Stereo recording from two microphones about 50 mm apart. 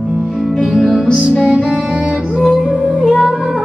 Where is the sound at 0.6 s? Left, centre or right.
Centre.